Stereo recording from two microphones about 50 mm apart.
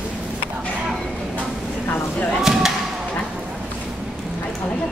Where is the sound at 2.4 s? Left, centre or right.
Centre.